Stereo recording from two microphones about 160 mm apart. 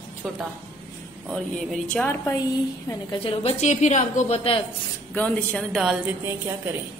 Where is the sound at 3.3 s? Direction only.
45° left (ahead or behind).